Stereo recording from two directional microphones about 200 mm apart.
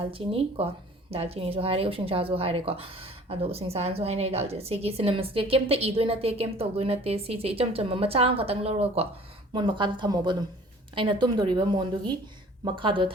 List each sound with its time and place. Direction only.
0.0 s speech: 25° right (ahead or behind)